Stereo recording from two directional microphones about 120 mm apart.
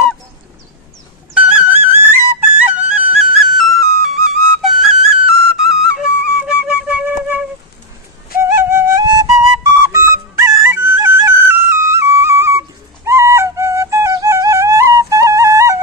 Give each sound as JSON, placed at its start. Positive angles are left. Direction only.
{"t": 1.3, "sound": "music", "side_deg": -10}
{"t": 2.7, "sound": "flute", "side_deg": -5}
{"t": 8.4, "sound": "music", "side_deg": -20}
{"t": 9.0, "sound": "flute", "side_deg": -30}